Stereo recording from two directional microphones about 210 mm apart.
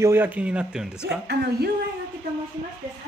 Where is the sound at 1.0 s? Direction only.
50° right (ahead or behind).